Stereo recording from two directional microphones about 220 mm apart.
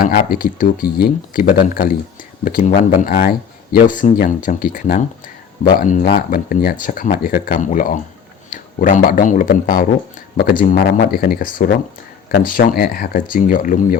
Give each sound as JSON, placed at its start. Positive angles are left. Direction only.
{"t": 0.0, "sound": "speech", "side_deg": 40}